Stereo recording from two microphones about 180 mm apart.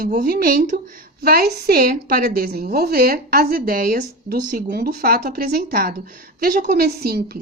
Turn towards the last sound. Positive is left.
turn(degrees=-60)  # may be behind; listen again after turning